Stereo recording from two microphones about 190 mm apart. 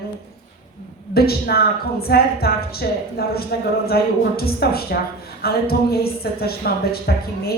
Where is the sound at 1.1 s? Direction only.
55° left (ahead or behind).